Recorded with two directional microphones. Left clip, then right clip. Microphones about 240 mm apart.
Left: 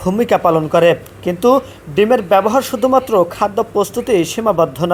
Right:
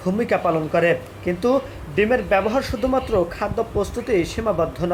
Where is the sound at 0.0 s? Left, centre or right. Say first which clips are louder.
Left 7 dB; left.